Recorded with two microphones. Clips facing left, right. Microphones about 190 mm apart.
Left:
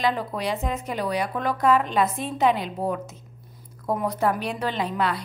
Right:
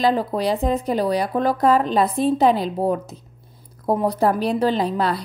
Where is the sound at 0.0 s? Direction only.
35° right (ahead or behind).